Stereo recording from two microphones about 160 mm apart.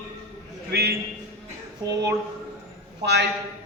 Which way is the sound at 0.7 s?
85° right.